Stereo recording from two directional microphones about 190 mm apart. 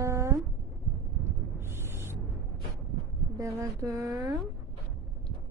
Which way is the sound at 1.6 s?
15° right (ahead or behind).